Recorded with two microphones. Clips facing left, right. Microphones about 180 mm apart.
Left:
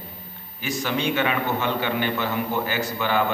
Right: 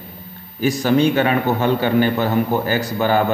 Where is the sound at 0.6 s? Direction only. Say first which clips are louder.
Right 10 dB; 35° right (ahead or behind).